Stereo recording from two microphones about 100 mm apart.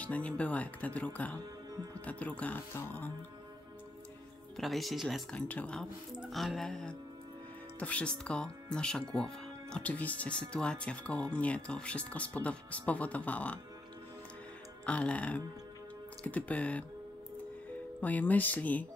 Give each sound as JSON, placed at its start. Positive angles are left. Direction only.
{"t": 0.0, "sound": "speech", "side_deg": 15}
{"t": 4.6, "sound": "speech", "side_deg": 0}
{"t": 5.3, "sound": "speech", "side_deg": 10}
{"t": 6.1, "sound": "speech", "side_deg": 0}
{"t": 14.9, "sound": "speech", "side_deg": 15}
{"t": 18.0, "sound": "speech", "side_deg": 15}